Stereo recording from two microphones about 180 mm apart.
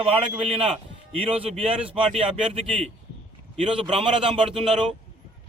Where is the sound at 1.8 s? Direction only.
5° right (ahead or behind).